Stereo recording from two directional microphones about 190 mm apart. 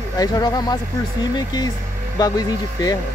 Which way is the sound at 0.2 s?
20° left (ahead or behind).